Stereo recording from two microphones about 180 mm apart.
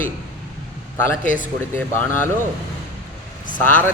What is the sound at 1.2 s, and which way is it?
Speech, 45° left (ahead or behind).